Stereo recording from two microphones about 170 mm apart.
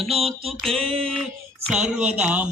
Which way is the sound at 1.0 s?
Centre (ahead or behind).